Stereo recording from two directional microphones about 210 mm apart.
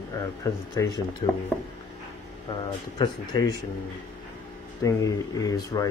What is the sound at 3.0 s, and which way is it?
Speech, 20° left (ahead or behind).